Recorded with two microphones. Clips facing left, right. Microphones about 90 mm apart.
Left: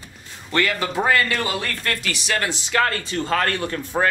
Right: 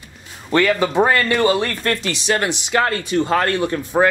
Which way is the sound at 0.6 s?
25° right (ahead or behind).